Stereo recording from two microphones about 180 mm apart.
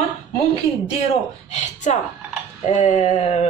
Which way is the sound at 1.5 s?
40° left (ahead or behind).